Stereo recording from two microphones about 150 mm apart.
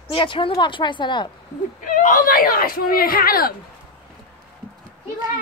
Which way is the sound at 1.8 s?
60° left (ahead or behind).